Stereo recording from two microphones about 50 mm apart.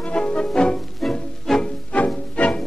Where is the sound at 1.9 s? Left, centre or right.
Left.